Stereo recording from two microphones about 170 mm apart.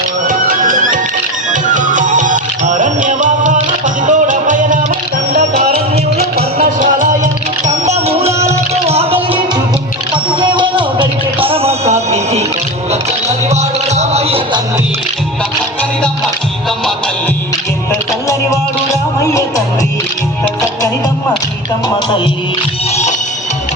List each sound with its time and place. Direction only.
0.3 s music: 55° right (ahead or behind)
6.1 s music: 60° right (ahead or behind); by 8.3 s 40° right (ahead or behind)
8.4 s a sound: 40° right (ahead or behind)
10.4 s music: 30° right (ahead or behind)
19.2 s music: 20° left (ahead or behind)